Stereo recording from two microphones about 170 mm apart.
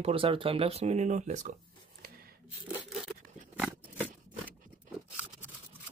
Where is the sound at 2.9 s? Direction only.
Centre (ahead or behind).